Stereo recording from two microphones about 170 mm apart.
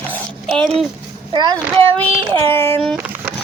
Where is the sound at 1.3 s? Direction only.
25° right (ahead or behind).